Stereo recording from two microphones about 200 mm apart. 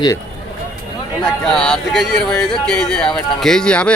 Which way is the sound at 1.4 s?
5° left (ahead or behind).